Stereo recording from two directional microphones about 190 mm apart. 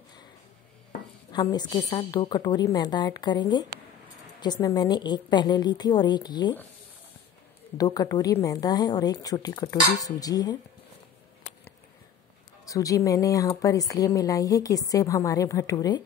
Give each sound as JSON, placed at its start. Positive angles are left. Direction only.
{"t": 1.3, "sound": "a woman's voice", "side_deg": 20}
{"t": 7.7, "sound": "a woman's voice", "side_deg": 20}
{"t": 12.6, "sound": "speech", "side_deg": 20}